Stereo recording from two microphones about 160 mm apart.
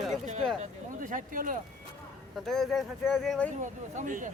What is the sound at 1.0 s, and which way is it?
Speech, 55° right (ahead or behind).